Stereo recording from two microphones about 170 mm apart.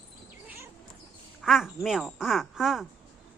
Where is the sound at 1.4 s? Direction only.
Centre (ahead or behind).